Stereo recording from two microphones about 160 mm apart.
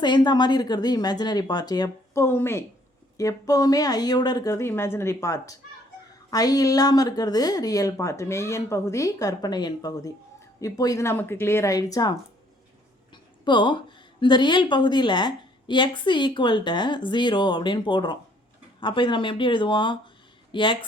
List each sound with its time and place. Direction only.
0.0 s a woman's voice: 25° left (ahead or behind)
13.4 s a woman's voice: 30° left (ahead or behind)